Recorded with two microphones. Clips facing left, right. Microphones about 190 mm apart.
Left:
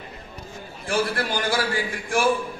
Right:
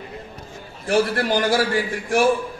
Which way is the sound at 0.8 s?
40° right (ahead or behind).